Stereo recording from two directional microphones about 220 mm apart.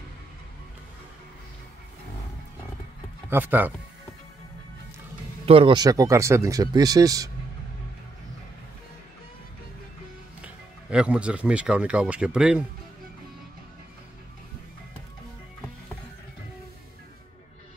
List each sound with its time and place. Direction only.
3.3 s speech: 10° right (ahead or behind)
5.4 s speech: 25° right (ahead or behind)
10.4 s speech: 5° right (ahead or behind)